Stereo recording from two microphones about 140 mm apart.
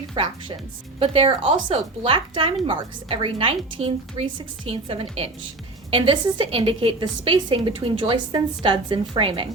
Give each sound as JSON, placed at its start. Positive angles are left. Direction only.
{"t": 0.9, "sound": "a woman's voice", "side_deg": -40}